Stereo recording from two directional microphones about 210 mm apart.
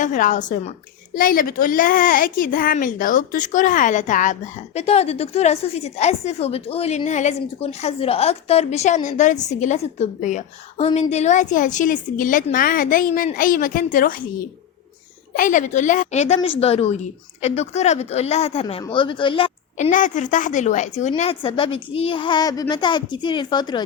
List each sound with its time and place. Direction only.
0.0 s a woman's voice: 40° left (ahead or behind)
18.6 s a woman's voice: 20° left (ahead or behind)